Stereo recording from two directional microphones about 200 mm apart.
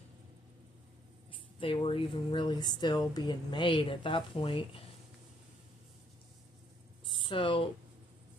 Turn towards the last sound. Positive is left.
turn(degrees=25)  # may be behind; listen again after turning